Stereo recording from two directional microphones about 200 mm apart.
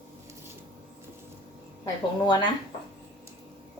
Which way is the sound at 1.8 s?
20° left (ahead or behind).